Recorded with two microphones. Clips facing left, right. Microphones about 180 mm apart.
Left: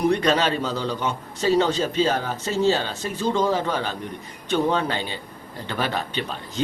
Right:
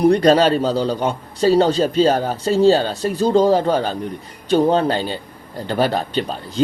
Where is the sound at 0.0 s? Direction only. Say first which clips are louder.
Right 7 dB; 35° right (ahead or behind).